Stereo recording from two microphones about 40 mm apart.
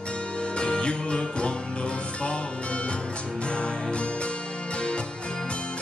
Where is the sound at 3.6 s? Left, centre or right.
Left.